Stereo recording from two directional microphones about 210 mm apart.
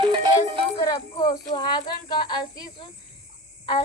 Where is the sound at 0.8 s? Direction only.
20° left (ahead or behind).